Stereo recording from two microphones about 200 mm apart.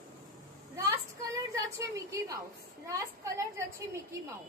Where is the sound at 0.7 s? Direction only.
15° right (ahead or behind).